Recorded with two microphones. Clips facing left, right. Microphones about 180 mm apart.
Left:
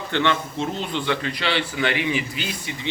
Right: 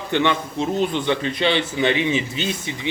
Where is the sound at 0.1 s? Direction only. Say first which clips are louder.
Right 2 dB; 15° right (ahead or behind).